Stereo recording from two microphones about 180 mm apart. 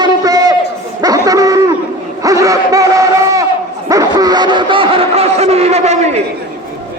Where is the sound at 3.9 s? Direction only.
20° right (ahead or behind); by 6.2 s 35° right (ahead or behind).